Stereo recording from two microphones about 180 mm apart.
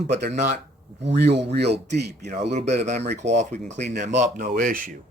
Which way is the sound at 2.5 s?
40° right (ahead or behind).